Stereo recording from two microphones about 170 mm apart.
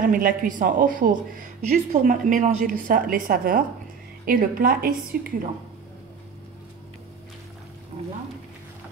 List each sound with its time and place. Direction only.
0.0 s a woman's voice: 55° right (ahead or behind)
7.9 s frying: 30° right (ahead or behind)